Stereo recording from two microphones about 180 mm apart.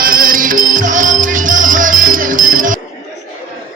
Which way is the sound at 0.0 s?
50° right (ahead or behind).